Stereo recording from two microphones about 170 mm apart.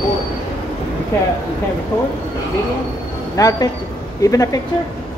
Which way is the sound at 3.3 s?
20° left (ahead or behind).